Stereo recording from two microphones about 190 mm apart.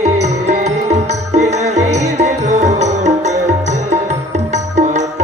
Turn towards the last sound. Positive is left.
turn(degrees=-35)  # may be behind; listen again after turning